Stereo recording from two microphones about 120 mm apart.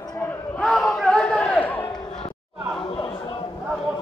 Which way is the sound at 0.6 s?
5° left (ahead or behind).